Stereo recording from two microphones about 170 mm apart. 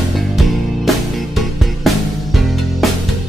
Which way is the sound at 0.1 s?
Centre (ahead or behind).